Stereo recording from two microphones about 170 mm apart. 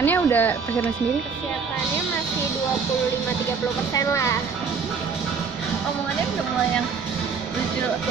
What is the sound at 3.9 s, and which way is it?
Speech, 15° left (ahead or behind).